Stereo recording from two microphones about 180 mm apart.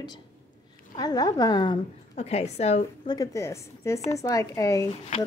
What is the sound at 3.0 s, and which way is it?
A woman's voice, 20° left (ahead or behind).